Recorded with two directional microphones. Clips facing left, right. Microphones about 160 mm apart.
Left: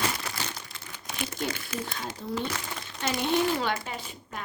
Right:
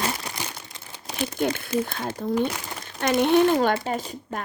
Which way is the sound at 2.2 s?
55° right (ahead or behind).